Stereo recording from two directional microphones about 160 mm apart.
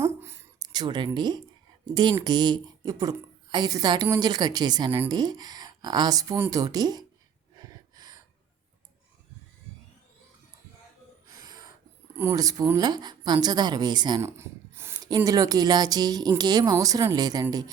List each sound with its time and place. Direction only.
0.0 s a sound: 15° right (ahead or behind)
2.0 s speech: 30° right (ahead or behind)
11.3 s snort: 25° right (ahead or behind)
12.1 s speech: 15° right (ahead or behind)
14.2 s speech: 15° right (ahead or behind)